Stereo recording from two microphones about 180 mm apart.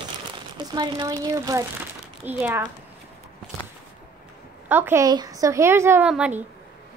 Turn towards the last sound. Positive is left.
turn(degrees=-5)  # may be behind; listen again after turning